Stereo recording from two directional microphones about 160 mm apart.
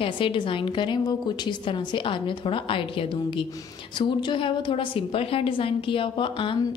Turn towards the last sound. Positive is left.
turn(degrees=30)  # may be behind; listen again after turning